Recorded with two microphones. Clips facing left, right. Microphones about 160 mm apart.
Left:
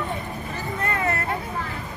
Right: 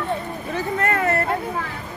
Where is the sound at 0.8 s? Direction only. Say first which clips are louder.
Right 4 dB; 50° right (ahead or behind).